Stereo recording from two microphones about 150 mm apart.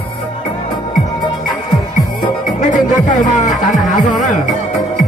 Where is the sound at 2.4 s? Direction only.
60° left (ahead or behind).